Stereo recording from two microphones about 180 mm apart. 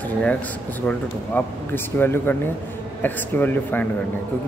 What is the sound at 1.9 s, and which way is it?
Speech, 10° left (ahead or behind).